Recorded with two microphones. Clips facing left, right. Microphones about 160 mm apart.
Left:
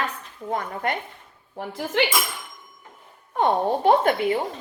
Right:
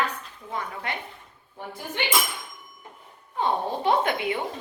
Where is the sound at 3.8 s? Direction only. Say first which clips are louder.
Left 5 dB; 45° left (ahead or behind).